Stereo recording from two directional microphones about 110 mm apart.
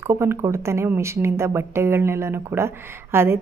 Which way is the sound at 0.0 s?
25° right (ahead or behind).